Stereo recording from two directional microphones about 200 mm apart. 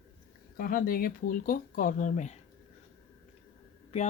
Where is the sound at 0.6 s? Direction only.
45° left (ahead or behind).